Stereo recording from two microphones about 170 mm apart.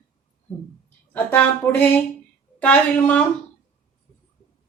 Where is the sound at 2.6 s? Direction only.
10° left (ahead or behind).